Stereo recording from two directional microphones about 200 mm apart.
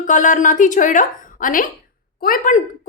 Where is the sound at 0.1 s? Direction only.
40° left (ahead or behind).